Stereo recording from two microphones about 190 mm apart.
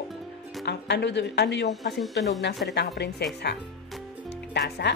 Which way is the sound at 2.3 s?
70° left (ahead or behind).